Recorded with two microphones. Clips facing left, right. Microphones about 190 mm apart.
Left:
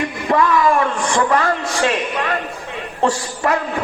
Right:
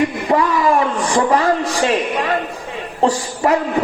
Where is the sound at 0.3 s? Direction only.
30° right (ahead or behind).